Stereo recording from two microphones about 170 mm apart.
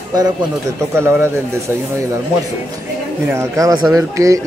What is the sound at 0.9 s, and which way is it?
Speech, 15° right (ahead or behind).